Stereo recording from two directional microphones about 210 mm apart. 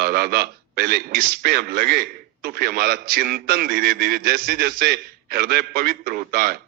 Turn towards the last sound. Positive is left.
turn(degrees=-45)  # may be behind; listen again after turning